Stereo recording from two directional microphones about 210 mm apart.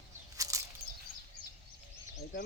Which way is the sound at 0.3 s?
15° right (ahead or behind).